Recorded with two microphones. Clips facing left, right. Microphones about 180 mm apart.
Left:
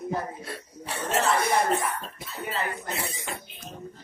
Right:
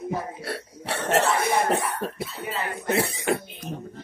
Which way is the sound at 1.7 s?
70° right (ahead or behind).